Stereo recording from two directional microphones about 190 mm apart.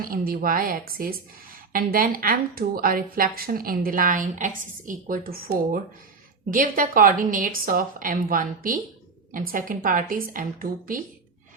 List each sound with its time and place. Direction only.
0.0 s a woman's voice: 50° right (ahead or behind)